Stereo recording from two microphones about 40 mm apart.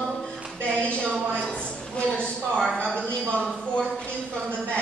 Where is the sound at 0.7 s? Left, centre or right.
Left.